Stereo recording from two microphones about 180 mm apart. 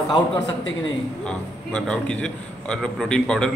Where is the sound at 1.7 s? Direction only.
5° left (ahead or behind).